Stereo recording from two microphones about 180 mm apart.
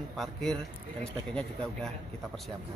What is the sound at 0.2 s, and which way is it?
Speech, centre (ahead or behind).